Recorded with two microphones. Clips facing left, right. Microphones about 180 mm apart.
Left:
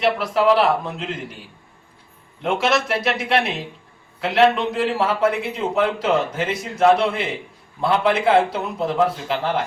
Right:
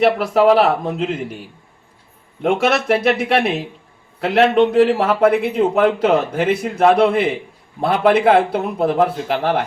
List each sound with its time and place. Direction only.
0.0 s speech: 50° right (ahead or behind)
2.4 s a man's voice: 55° right (ahead or behind)